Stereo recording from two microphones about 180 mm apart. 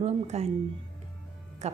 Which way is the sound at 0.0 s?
35° right (ahead or behind).